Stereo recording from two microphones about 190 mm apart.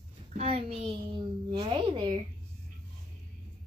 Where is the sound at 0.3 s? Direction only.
35° right (ahead or behind).